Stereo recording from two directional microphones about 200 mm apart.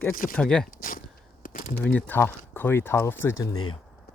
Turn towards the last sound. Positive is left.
turn(degrees=90)